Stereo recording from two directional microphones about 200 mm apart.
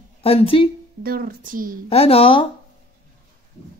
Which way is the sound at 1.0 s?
50° right (ahead or behind).